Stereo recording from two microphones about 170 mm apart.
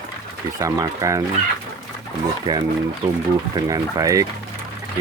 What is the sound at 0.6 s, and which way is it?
Speech, 20° right (ahead or behind).